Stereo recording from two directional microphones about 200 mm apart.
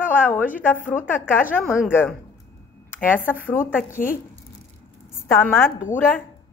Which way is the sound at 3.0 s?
10° left (ahead or behind).